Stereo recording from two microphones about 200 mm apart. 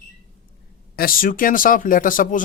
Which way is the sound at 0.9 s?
45° left (ahead or behind).